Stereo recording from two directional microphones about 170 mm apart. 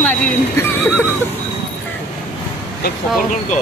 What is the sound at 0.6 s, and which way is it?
Neigh, 15° left (ahead or behind).